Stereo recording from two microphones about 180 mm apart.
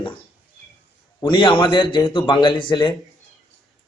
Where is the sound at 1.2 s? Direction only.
25° left (ahead or behind).